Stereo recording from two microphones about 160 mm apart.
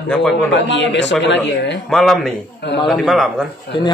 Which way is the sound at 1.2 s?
90° left.